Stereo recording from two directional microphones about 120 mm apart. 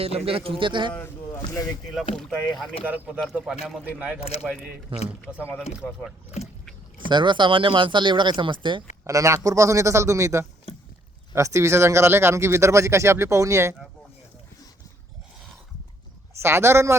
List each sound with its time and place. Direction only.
0.0 s speech: 55° right (ahead or behind)
0.9 s speech: 20° left (ahead or behind)
2.1 s speech: centre (ahead or behind)
2.8 s speech: 15° right (ahead or behind)
4.9 s speech: 45° right (ahead or behind)
7.1 s speech: 40° right (ahead or behind)
9.0 s speech: 25° right (ahead or behind)
16.3 s speech: 20° right (ahead or behind)